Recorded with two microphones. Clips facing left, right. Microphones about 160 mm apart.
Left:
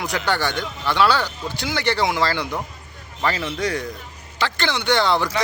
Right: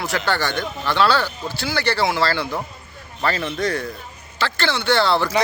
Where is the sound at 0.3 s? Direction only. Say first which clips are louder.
Left 1 dB; 15° left (ahead or behind).